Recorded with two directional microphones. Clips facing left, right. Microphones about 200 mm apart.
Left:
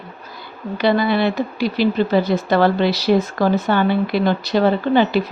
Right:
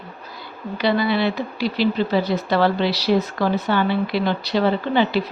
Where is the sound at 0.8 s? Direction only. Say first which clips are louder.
Left 3 dB; 50° left (ahead or behind).